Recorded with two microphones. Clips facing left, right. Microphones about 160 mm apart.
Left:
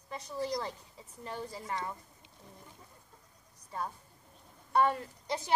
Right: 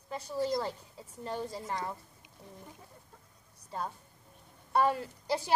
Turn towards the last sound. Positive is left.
turn(degrees=-30)  # may be behind; listen again after turning